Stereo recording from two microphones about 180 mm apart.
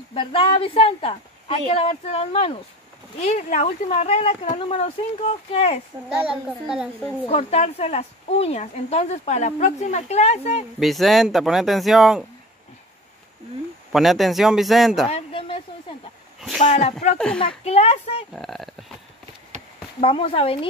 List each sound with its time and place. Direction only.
0.1 s a woman's voice: 30° left (ahead or behind)
6.0 s speech: 5° right (ahead or behind)
7.2 s a woman's voice: 35° left (ahead or behind)
10.8 s speech: centre (ahead or behind)
13.9 s speech: centre (ahead or behind)
15.0 s speech: 30° left (ahead or behind)
16.5 s a woman's voice: 40° left (ahead or behind)
18.3 s speech: centre (ahead or behind)
20.0 s a woman's voice: 30° left (ahead or behind)